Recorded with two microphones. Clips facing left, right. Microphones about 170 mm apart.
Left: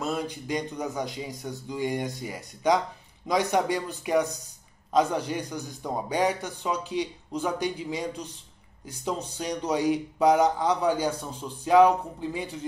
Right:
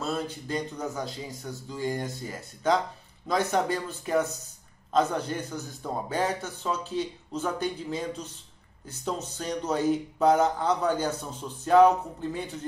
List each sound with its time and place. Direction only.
0.0 s a man's voice: 15° left (ahead or behind)